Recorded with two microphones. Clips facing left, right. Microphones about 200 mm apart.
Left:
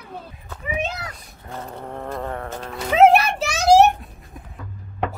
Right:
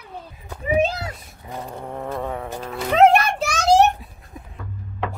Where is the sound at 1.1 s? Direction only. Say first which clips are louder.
Right 1 dB; centre (ahead or behind).